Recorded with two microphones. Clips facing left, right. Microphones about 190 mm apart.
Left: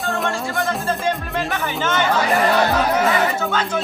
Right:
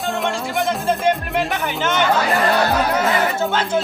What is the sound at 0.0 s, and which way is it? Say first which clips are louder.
Music: right 1 dB; centre (ahead or behind).